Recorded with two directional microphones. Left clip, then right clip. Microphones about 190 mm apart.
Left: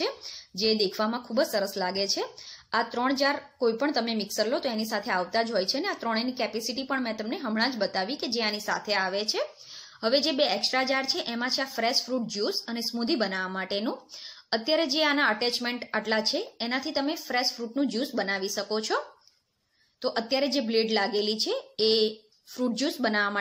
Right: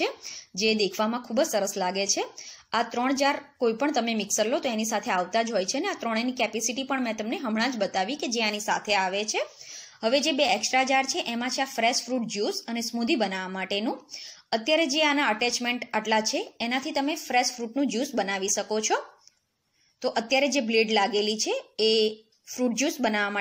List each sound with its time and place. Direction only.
0.0 s speech: 10° right (ahead or behind)
20.0 s speech: 10° right (ahead or behind)
21.7 s speech: 35° right (ahead or behind)
22.6 s speech: 5° right (ahead or behind)